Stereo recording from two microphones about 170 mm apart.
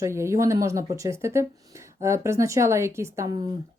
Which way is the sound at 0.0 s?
15° right (ahead or behind).